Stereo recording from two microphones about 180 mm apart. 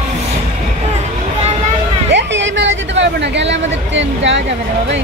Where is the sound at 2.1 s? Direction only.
90° right.